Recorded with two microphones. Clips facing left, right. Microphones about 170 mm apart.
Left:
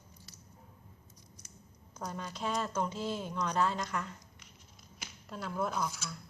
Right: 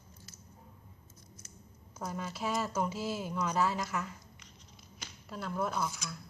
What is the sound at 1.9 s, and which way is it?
Speech, 5° right (ahead or behind).